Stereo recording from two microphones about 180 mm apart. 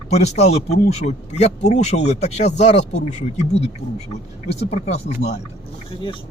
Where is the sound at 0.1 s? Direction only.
35° left (ahead or behind).